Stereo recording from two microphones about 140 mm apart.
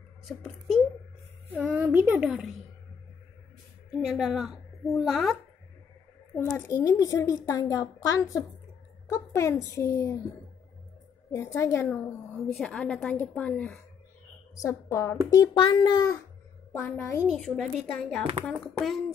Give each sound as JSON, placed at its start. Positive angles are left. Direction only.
{"t": 1.5, "sound": "a child's voice", "side_deg": -10}
{"t": 3.9, "sound": "a woman's voice", "side_deg": -5}
{"t": 6.4, "sound": "a child's voice", "side_deg": 25}
{"t": 11.3, "sound": "a child's voice", "side_deg": 20}
{"t": 12.5, "sound": "a woman's voice", "side_deg": 5}
{"t": 14.5, "sound": "a woman's voice", "side_deg": 20}
{"t": 16.7, "sound": "a woman's voice", "side_deg": 15}
{"t": 17.2, "sound": "speech", "side_deg": 0}